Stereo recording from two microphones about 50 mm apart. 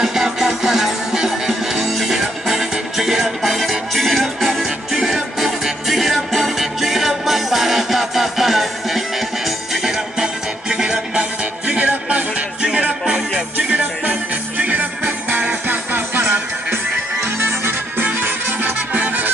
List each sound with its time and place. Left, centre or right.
0.0 s music: centre; by 12.4 s right
13.0 s music: centre
13.6 s music: right